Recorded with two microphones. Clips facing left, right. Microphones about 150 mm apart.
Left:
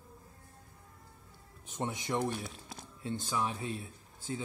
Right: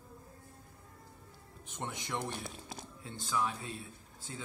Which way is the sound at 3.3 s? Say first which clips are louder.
Right 1 dB; 20° left (ahead or behind).